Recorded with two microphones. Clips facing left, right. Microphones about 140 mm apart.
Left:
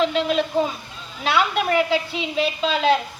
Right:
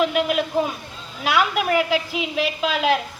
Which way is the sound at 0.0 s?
10° right (ahead or behind).